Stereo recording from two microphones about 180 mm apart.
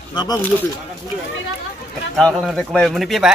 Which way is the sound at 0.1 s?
25° left (ahead or behind).